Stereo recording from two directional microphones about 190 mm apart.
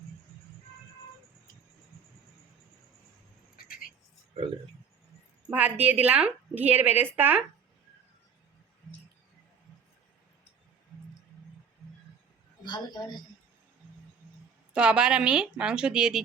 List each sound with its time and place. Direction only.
3.5 s a sound: 50° left (ahead or behind)
5.5 s a woman's voice: 10° right (ahead or behind)
12.6 s a woman's voice: 25° left (ahead or behind)
14.7 s a woman's voice: 5° right (ahead or behind)